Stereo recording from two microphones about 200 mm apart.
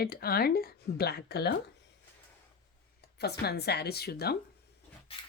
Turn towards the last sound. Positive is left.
turn(degrees=55)  # may be behind; listen again after turning